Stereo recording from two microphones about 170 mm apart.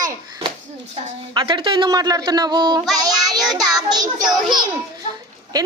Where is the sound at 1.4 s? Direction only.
25° right (ahead or behind).